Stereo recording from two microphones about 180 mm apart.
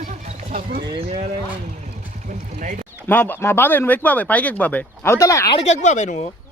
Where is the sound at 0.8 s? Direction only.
25° right (ahead or behind).